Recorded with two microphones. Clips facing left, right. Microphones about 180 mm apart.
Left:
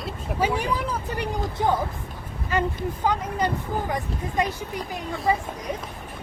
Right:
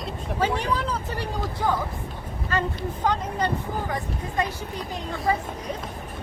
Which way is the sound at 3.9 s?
15° left (ahead or behind).